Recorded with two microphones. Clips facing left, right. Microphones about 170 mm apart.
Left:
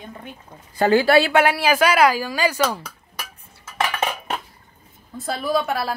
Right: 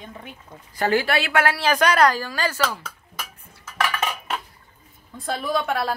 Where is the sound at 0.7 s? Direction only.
30° left (ahead or behind).